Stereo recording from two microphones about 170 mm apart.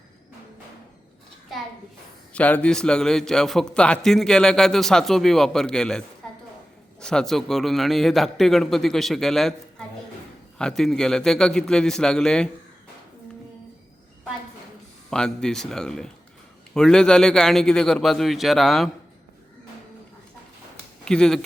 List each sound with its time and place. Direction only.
2.3 s a man's voice: 5° left (ahead or behind)
7.0 s a man's voice: 5° left (ahead or behind)
15.1 s a man's voice: 5° left (ahead or behind)
21.0 s speech: 5° left (ahead or behind)